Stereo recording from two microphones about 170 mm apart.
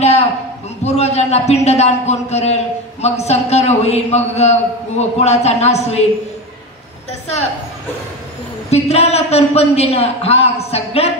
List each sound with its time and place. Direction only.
0.0 s a sound: 40° left (ahead or behind)
0.8 s a man's voice: 40° left (ahead or behind)
8.6 s a man's voice: 40° left (ahead or behind)